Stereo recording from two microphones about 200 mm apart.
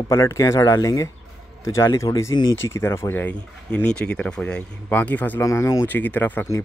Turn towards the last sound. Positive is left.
turn(degrees=10)  # may be behind; listen again after turning